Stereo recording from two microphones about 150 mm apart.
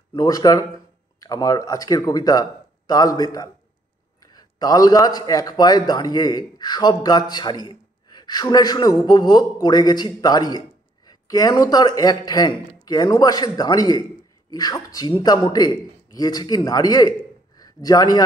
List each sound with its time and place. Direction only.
0.1 s a man's voice: 25° left (ahead or behind)